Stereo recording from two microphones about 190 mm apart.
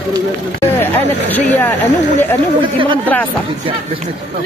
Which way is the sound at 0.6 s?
10° left (ahead or behind).